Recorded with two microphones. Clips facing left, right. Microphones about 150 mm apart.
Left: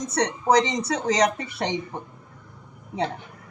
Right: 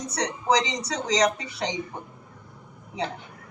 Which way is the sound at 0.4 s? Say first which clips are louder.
Left 3 dB; 50° left (ahead or behind).